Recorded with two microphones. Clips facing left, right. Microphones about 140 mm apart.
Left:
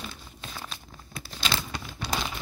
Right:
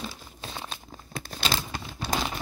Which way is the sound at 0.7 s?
40° right (ahead or behind).